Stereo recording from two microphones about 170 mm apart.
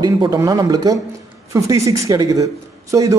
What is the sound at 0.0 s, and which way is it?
Speech, 25° right (ahead or behind).